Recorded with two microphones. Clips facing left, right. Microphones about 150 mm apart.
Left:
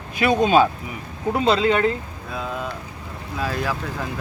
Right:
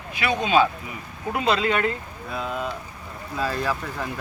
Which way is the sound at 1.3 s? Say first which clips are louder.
Left 4 dB; 30° left (ahead or behind).